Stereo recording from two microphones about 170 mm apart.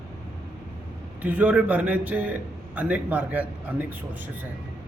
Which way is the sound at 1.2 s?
10° right (ahead or behind).